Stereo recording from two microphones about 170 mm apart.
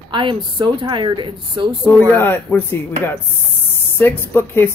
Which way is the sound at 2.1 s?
15° left (ahead or behind).